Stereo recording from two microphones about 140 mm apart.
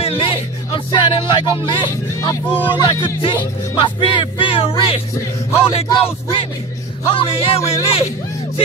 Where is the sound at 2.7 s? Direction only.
35° left (ahead or behind).